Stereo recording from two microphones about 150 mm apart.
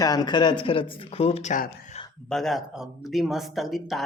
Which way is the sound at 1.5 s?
60° left (ahead or behind).